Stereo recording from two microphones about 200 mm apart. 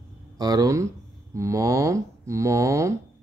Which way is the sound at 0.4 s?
20° right (ahead or behind).